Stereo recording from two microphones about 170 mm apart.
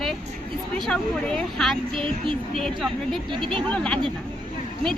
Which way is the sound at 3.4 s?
30° right (ahead or behind).